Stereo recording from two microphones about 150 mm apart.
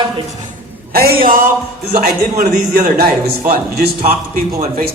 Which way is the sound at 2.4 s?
70° right (ahead or behind).